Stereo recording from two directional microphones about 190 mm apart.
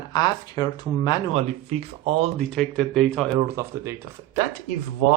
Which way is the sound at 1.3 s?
35° right (ahead or behind).